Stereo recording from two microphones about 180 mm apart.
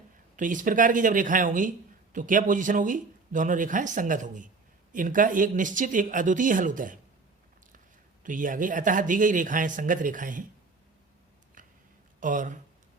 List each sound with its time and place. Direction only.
0.3 s speech: 45° right (ahead or behind)
8.2 s speech: 45° right (ahead or behind)
11.6 s a sound: 50° right (ahead or behind)
12.2 s speech: 45° right (ahead or behind)